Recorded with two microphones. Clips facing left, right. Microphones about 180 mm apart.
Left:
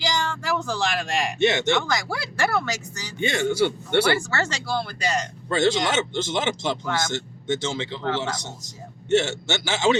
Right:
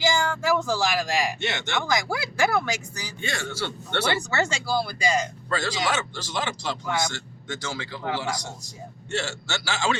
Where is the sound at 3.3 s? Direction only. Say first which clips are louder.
Left 10 dB; 20° left (ahead or behind).